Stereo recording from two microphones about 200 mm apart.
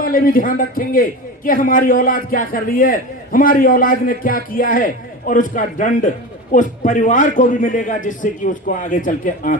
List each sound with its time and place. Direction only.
0.0 s a man's voice: 45° left (ahead or behind)